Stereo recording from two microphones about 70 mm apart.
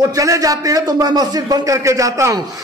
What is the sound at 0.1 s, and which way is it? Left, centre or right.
Speech, right.